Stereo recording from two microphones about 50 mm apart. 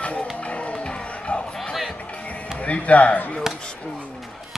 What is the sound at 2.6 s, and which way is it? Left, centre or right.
Speech, left.